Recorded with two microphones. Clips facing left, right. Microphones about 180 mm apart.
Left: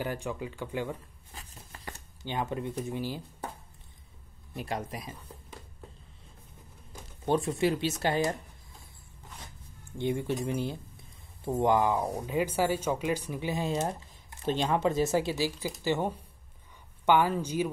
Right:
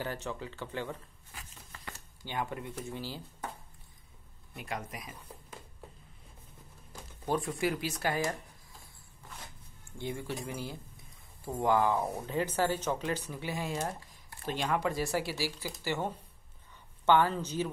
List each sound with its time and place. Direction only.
0.0 s speech: 15° left (ahead or behind)
1.3 s a sound: 35° left (ahead or behind)
2.2 s speech: 20° left (ahead or behind)
4.6 s speech: 30° left (ahead or behind)
6.9 s speech: 25° left (ahead or behind)
9.9 s speech: 20° left (ahead or behind)